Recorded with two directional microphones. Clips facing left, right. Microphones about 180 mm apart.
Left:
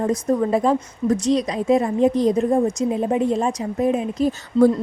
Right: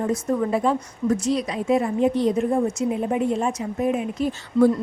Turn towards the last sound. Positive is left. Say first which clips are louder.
# left 2 dB
turn(degrees=40)  # may be behind; listen again after turning